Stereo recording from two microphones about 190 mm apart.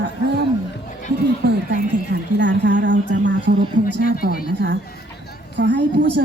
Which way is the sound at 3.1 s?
70° right (ahead or behind).